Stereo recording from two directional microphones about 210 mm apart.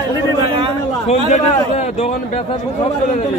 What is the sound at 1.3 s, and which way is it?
Speech, 30° left (ahead or behind).